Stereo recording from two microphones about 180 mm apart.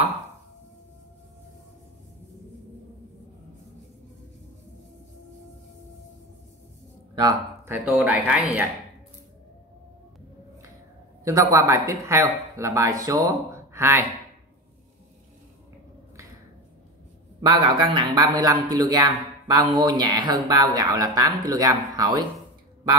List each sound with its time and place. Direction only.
7.2 s speech: 20° right (ahead or behind)
11.2 s speech: 20° right (ahead or behind)
17.5 s a man's voice: 25° right (ahead or behind)